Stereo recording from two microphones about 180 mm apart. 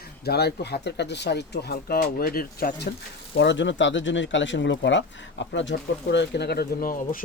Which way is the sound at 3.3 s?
80° left.